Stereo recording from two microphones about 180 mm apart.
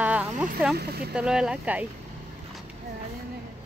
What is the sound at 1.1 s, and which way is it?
Speech, 5° right (ahead or behind).